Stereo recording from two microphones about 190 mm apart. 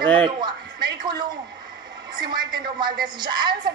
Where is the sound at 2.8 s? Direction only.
25° right (ahead or behind).